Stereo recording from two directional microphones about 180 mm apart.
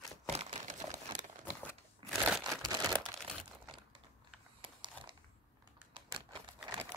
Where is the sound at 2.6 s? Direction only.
20° right (ahead or behind).